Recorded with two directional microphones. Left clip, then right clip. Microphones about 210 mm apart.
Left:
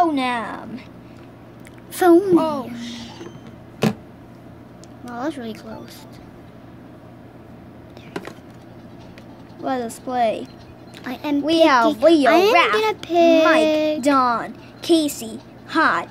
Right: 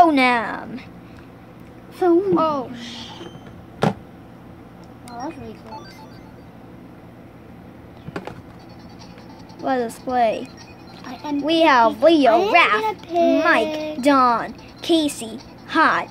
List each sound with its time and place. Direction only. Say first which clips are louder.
0.0 s a woman's voice: right 5 dB; 20° right (ahead or behind)
2.0 s speech: left 4 dB; 50° left (ahead or behind)
2.3 s speech: left 1 dB; 5° right (ahead or behind)
5.2 s speech: left 5 dB; 45° left (ahead or behind)
9.6 s a woman's voice: right 2 dB; 5° right (ahead or behind)
12.3 s a child's voice: even; 40° left (ahead or behind)
13.4 s a woman's voice: left 2 dB; 10° right (ahead or behind)
13.7 s a child's voice: left 8 dB; 35° left (ahead or behind)
14.0 s a woman's voice: right 6 dB; 5° right (ahead or behind)